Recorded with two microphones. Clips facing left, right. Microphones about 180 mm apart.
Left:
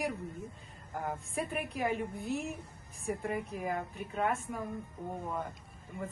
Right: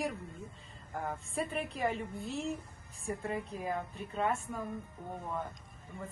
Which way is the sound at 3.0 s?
5° left (ahead or behind).